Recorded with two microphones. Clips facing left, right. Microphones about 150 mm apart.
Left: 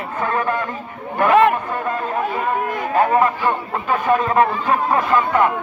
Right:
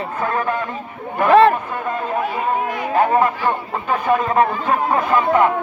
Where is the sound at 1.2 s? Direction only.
30° right (ahead or behind).